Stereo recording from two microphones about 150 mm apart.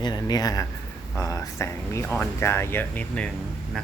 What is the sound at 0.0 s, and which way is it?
Speech, 25° left (ahead or behind).